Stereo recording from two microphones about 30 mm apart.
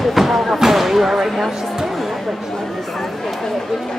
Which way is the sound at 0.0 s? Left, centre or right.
Centre.